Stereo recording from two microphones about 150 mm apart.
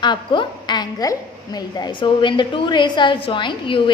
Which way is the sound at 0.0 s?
30° left (ahead or behind).